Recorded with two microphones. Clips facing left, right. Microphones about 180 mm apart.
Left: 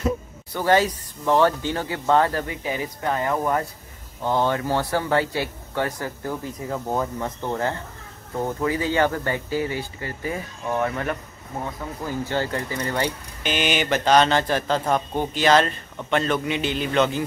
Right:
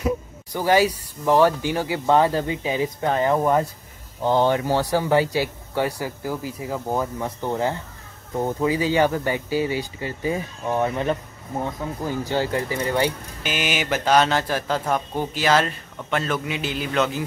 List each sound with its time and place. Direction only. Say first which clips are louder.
0.0 s speech: right 1 dB; 10° right (ahead or behind)
12.3 s a man's voice: right 4 dB; 15° right (ahead or behind)